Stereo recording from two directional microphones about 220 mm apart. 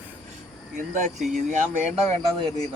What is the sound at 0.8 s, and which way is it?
Speech, 35° right (ahead or behind).